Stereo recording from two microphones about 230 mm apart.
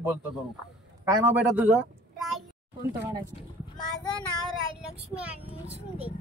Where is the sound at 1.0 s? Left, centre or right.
Centre.